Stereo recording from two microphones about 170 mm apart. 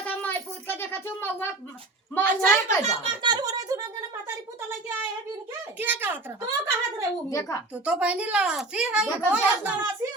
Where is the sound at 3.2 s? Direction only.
25° right (ahead or behind).